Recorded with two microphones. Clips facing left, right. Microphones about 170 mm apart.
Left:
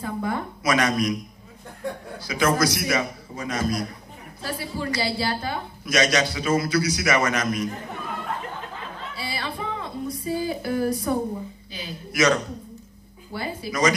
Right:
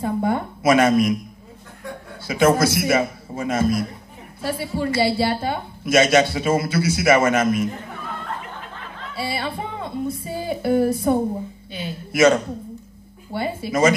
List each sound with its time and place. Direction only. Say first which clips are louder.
0.0 s a sound: right 6 dB; 25° right (ahead or behind)
2.2 s a woman's voice: right 5 dB; 25° right (ahead or behind)
9.1 s a woman's voice: right 7 dB; 25° right (ahead or behind)